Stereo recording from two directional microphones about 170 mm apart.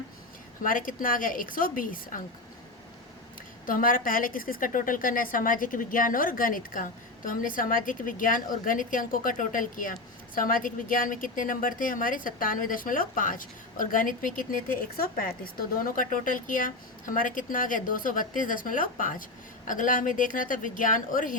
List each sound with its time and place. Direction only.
0.6 s a woman's voice: 55° left (ahead or behind)
3.7 s a woman's voice: 55° left (ahead or behind)